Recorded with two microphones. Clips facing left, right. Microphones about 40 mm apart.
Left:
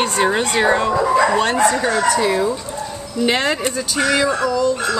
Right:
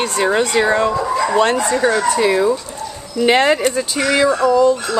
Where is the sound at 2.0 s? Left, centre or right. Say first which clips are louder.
Right 2 dB; right.